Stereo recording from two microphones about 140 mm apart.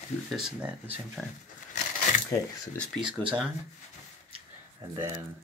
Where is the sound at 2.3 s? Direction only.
10° left (ahead or behind).